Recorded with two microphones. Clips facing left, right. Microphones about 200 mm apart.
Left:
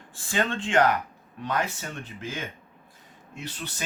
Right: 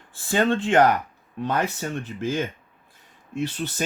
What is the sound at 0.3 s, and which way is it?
Speech, 40° right (ahead or behind).